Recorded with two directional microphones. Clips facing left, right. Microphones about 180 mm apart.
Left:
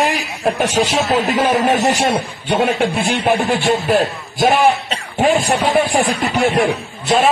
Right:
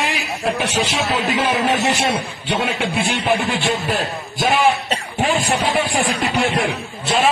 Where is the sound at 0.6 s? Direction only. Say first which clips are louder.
Left 4 dB; 40° left (ahead or behind).